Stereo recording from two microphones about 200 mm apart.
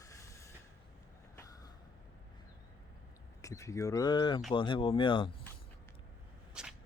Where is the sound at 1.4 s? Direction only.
15° left (ahead or behind).